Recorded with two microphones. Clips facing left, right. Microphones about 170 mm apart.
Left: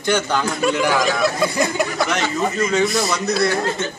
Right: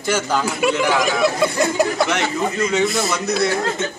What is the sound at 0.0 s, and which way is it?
A man's voice, 5° right (ahead or behind).